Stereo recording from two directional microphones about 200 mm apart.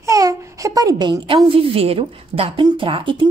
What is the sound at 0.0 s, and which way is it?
A woman's voice, 15° right (ahead or behind).